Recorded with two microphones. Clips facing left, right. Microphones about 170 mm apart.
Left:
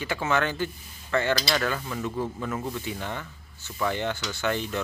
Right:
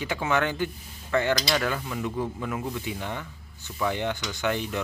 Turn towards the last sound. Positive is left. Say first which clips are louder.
# even
turn(degrees=-15)  # may be behind; listen again after turning